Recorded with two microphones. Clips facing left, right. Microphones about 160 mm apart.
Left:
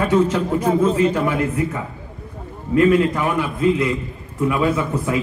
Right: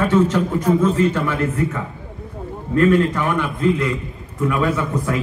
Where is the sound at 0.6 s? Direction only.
35° left (ahead or behind).